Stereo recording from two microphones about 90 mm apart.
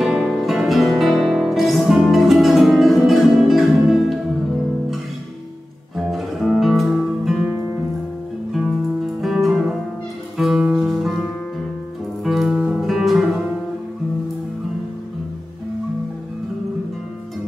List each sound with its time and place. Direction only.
0.0 s music: 5° right (ahead or behind)
5.9 s music: centre (ahead or behind)
8.5 s music: 5° right (ahead or behind)